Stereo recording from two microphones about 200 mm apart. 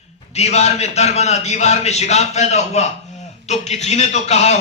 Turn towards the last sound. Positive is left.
turn(degrees=35)  # may be behind; listen again after turning